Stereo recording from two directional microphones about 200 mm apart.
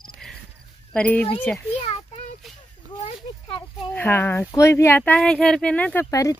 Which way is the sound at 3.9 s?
10° left (ahead or behind).